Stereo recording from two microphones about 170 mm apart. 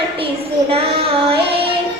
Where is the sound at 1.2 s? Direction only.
35° right (ahead or behind).